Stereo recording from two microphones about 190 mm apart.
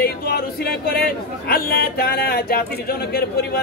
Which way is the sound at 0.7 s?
55° left (ahead or behind).